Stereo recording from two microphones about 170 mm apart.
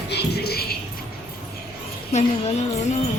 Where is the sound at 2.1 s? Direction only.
40° left (ahead or behind).